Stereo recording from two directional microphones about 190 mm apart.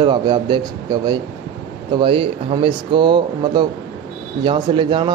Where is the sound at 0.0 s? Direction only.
25° right (ahead or behind).